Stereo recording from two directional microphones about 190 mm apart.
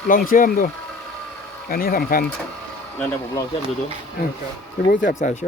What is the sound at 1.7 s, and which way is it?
Speech, 50° left (ahead or behind).